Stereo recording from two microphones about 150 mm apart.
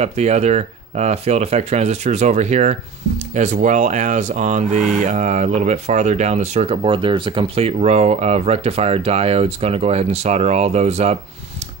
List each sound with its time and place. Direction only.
0.0 s speech: 45° right (ahead or behind)